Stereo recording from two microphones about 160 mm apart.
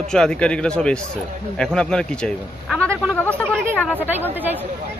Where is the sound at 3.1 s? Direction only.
5° left (ahead or behind).